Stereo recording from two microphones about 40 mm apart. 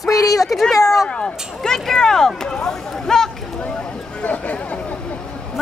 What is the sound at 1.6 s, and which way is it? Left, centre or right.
Speech, centre.